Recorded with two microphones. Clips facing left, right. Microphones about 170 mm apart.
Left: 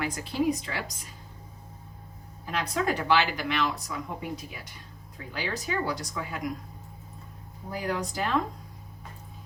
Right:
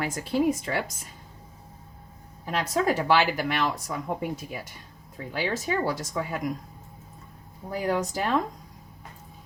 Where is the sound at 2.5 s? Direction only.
45° right (ahead or behind).